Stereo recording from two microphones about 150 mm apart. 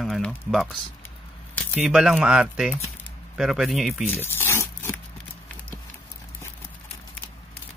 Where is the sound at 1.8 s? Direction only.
5° right (ahead or behind).